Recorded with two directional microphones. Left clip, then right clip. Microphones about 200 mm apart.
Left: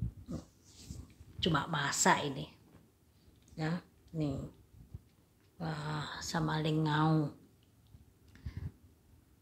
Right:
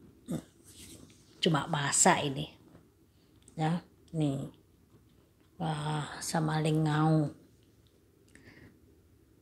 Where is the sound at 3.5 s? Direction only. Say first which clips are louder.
Right 6 dB; 20° right (ahead or behind).